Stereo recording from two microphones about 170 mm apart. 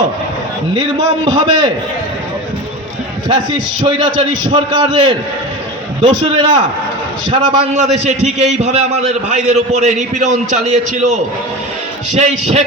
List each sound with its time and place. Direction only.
0.7 s a man's voice: 30° right (ahead or behind)
3.2 s a man's voice: 25° right (ahead or behind)
7.3 s a man's voice: 40° right (ahead or behind)